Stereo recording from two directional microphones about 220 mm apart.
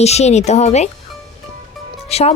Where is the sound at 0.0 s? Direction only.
30° left (ahead or behind).